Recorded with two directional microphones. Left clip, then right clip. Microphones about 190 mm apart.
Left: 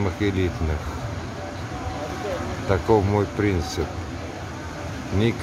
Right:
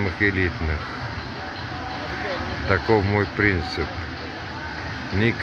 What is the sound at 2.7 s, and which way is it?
Speech, 5° left (ahead or behind).